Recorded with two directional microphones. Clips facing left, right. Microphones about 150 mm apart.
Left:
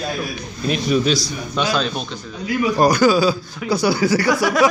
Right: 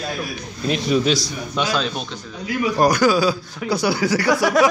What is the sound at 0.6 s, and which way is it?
Speech, 25° right (ahead or behind).